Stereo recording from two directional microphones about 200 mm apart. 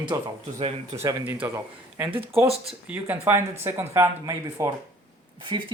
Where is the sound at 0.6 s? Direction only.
30° right (ahead or behind).